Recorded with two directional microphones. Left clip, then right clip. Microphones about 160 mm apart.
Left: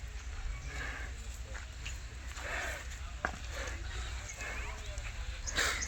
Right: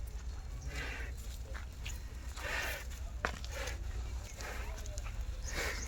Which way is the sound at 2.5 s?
35° right (ahead or behind).